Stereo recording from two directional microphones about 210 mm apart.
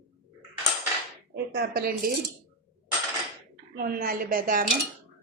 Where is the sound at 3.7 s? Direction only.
45° right (ahead or behind).